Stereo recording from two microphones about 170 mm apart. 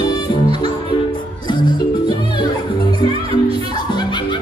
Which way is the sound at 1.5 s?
25° left (ahead or behind).